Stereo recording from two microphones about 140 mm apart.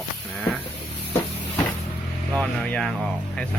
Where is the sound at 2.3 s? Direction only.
5° left (ahead or behind).